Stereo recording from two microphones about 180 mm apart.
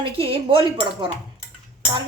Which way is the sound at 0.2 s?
30° right (ahead or behind).